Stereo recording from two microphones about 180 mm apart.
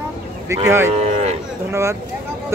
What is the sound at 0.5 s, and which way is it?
Speech, 15° right (ahead or behind).